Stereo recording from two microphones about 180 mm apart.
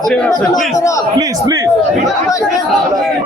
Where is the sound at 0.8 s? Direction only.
20° left (ahead or behind).